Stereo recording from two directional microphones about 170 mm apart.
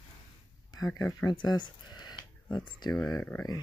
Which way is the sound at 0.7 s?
20° left (ahead or behind).